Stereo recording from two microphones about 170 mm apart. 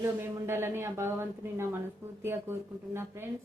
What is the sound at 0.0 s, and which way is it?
A woman's voice, 15° right (ahead or behind).